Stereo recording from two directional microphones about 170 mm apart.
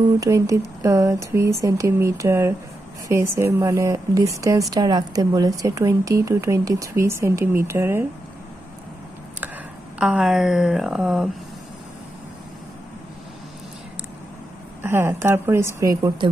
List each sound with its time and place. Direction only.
0.2 s speech: 20° right (ahead or behind)
9.9 s speech: 5° right (ahead or behind)
14.8 s speech: 15° right (ahead or behind)